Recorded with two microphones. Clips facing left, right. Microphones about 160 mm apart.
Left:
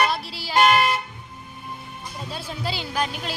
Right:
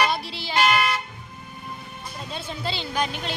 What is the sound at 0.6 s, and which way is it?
Toot, 45° left (ahead or behind).